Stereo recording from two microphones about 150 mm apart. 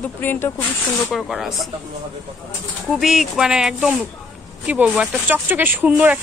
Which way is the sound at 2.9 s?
Centre (ahead or behind).